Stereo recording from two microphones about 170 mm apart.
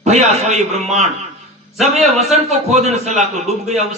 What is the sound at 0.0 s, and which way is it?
A man's voice, 40° right (ahead or behind).